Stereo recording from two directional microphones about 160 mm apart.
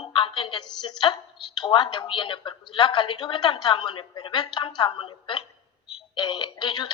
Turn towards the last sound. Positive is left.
turn(degrees=25)  # may be behind; listen again after turning